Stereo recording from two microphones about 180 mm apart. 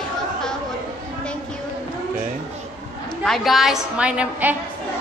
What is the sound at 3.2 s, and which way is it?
A woman's voice, centre (ahead or behind).